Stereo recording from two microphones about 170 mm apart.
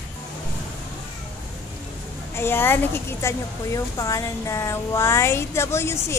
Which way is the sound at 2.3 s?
15° left (ahead or behind).